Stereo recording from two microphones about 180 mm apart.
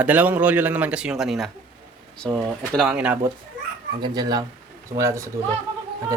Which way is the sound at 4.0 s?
20° right (ahead or behind).